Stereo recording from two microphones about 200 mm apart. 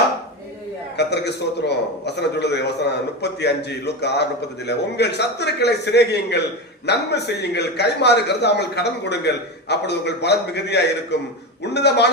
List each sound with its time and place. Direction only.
0.9 s a man's voice: 55° left (ahead or behind)